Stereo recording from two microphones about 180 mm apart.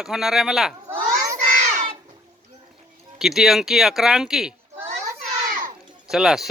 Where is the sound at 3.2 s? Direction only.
Centre (ahead or behind).